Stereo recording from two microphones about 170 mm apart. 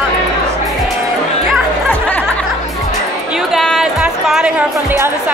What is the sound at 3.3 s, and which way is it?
Music, centre (ahead or behind).